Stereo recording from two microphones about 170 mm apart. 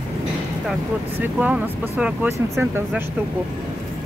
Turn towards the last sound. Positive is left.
turn(degrees=-15)  # may be behind; listen again after turning